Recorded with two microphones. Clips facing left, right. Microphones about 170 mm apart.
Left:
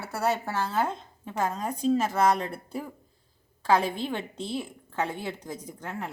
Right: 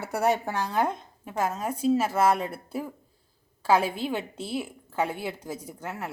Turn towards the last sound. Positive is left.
turn(degrees=-10)  # may be behind; listen again after turning